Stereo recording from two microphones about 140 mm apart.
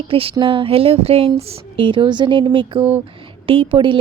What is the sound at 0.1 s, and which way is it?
Speech, 40° right (ahead or behind).